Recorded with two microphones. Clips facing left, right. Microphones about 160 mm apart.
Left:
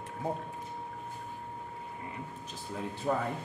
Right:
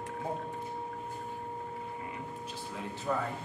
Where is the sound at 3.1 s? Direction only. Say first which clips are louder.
Left 2 dB; 40° left (ahead or behind).